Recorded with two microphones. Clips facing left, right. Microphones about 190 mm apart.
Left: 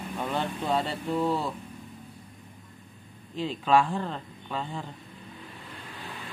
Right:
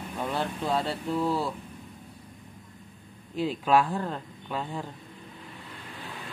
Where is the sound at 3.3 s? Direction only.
10° right (ahead or behind).